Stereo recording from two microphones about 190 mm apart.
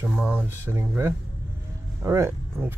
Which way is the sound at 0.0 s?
10° right (ahead or behind).